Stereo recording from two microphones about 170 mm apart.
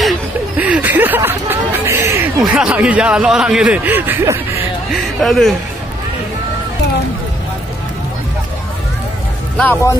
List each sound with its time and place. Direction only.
0.0 s chatter: 5° right (ahead or behind)
2.0 s snicker: 15° right (ahead or behind)
2.4 s speech: 5° right (ahead or behind)
5.2 s speech: centre (ahead or behind)
9.6 s a man's voice: 15° left (ahead or behind)